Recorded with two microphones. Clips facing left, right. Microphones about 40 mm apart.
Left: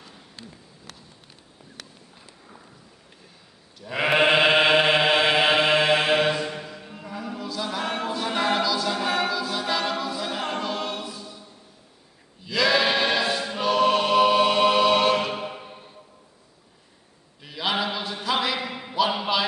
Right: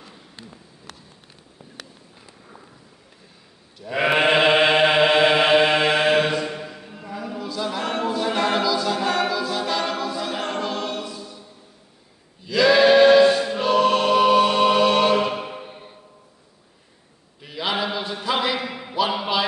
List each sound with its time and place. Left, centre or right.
3.8 s chant: centre
12.4 s choir: centre
15.6 s music: right
17.4 s a sound: centre